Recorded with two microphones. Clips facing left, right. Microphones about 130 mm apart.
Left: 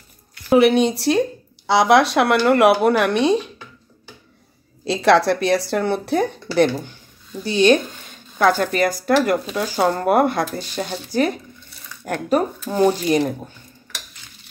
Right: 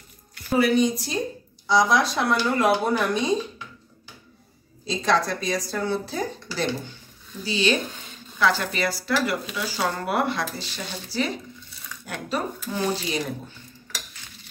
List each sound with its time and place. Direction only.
0.5 s speech: 70° left (ahead or behind)
4.8 s speech: 70° left (ahead or behind); by 13.2 s 50° left (ahead or behind)